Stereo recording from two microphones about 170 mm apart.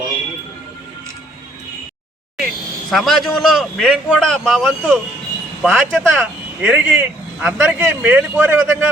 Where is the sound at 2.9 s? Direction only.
Centre (ahead or behind).